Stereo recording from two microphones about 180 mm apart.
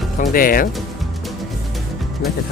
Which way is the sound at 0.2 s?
50° left (ahead or behind).